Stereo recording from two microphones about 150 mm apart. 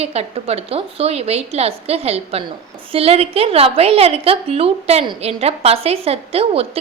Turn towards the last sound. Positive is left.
turn(degrees=-40)  # may be behind; listen again after turning